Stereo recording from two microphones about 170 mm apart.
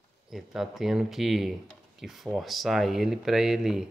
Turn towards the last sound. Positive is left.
turn(degrees=0)  # may be behind; listen again after turning